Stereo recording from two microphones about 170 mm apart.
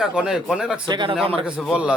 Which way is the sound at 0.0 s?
5° right (ahead or behind).